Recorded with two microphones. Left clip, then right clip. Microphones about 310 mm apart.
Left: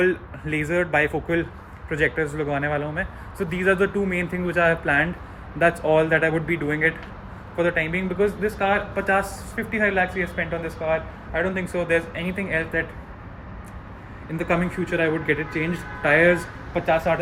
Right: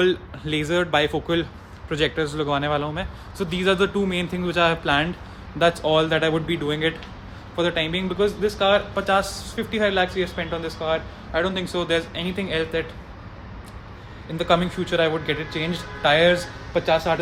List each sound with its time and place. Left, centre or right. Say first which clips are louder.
0.5 s a man's voice: even; centre
14.4 s a man's voice: right 4 dB; centre
14.8 s speech: right 1 dB; right
16.0 s a man's voice: even; centre